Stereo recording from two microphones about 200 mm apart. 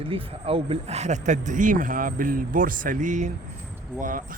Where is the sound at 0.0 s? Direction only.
30° right (ahead or behind).